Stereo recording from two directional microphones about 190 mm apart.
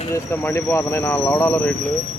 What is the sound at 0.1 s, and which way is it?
Speech, 15° left (ahead or behind).